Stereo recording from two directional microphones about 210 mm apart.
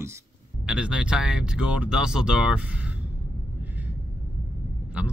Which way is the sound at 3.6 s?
10° right (ahead or behind).